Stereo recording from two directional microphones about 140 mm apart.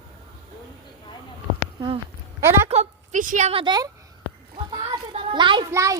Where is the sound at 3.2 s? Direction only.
70° right (ahead or behind).